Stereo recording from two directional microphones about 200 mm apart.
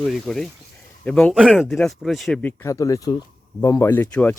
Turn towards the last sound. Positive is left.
turn(degrees=10)  # may be behind; listen again after turning